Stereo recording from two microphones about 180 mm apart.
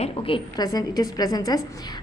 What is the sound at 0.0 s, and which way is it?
A woman's voice, 30° left (ahead or behind).